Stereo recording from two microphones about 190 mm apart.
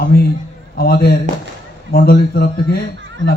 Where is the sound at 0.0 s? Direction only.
55° left (ahead or behind).